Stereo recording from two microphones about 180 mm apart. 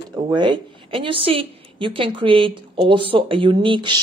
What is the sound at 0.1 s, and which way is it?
Speech, 25° right (ahead or behind).